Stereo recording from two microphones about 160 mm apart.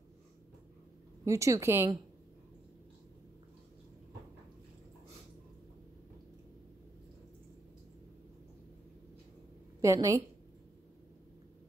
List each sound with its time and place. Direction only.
1.2 s speech: 20° right (ahead or behind)
9.8 s a woman's voice: 20° right (ahead or behind)